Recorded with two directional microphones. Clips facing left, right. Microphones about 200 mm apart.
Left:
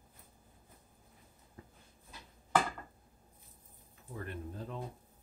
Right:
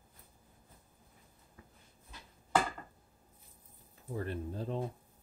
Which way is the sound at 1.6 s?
35° left (ahead or behind).